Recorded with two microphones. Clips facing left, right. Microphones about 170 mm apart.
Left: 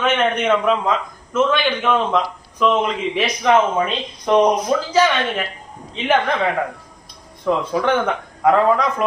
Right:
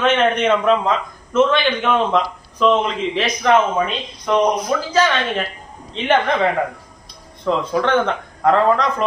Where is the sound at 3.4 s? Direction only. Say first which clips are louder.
Even; 15° left (ahead or behind).